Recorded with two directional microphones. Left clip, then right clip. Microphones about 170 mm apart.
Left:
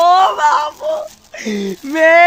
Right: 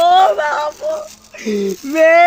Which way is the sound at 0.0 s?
40° left (ahead or behind).